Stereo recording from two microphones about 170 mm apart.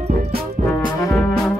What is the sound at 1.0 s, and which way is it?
Trombone, 20° left (ahead or behind).